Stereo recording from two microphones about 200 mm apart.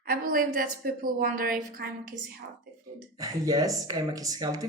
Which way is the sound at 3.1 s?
20° right (ahead or behind).